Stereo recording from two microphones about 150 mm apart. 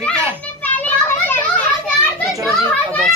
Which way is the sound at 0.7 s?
10° left (ahead or behind).